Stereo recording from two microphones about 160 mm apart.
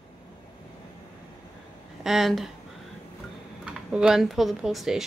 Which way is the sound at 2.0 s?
Centre (ahead or behind).